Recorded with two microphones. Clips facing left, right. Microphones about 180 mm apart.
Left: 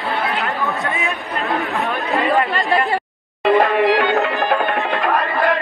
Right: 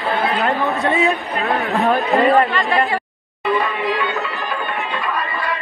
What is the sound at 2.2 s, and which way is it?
Chatter, 35° right (ahead or behind).